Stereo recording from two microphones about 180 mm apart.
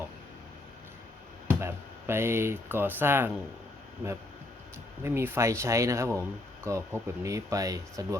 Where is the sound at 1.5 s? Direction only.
15° right (ahead or behind).